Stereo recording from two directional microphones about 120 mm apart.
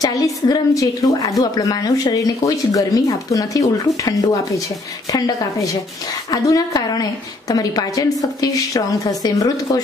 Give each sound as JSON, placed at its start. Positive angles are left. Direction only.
{"t": 0.0, "sound": "a woman's voice", "side_deg": 30}